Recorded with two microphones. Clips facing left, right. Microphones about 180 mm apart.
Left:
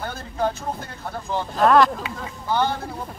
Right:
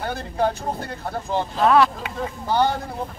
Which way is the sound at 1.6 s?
Centre (ahead or behind).